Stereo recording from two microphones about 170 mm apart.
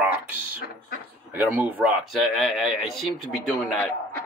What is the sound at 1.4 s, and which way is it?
Speech, 10° right (ahead or behind).